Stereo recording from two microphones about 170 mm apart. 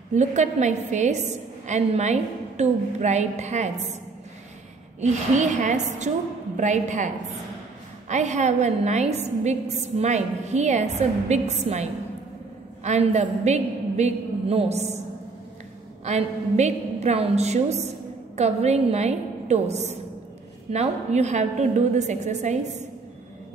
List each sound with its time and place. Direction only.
0.1 s a woman's voice: 45° right (ahead or behind)
5.0 s a woman's voice: 45° right (ahead or behind)
8.1 s a woman's voice: 45° right (ahead or behind)
16.1 s a woman's voice: 40° right (ahead or behind)